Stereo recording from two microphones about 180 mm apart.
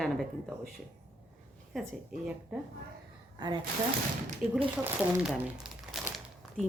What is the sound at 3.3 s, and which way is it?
Speech, 25° right (ahead or behind).